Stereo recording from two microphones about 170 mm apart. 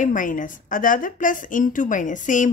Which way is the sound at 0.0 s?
50° left (ahead or behind).